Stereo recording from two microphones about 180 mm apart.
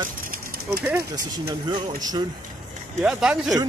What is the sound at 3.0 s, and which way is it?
Speech, 5° right (ahead or behind).